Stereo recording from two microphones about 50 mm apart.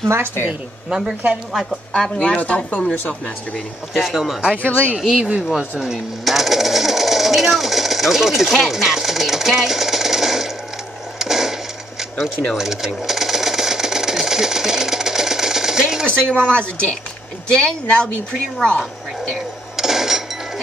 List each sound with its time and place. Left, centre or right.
0.4 s speech: left
0.8 s a woman's voice: centre
2.0 s speech: centre
4.0 s speech: centre
4.6 s speech: left
4.9 s speech: centre
6.2 s a sound: centre
12.5 s sewing machine: centre
16.1 s a woman's voice: centre
19.3 s a sound: centre